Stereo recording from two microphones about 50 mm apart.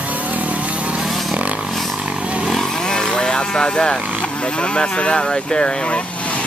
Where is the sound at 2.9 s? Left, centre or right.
Centre.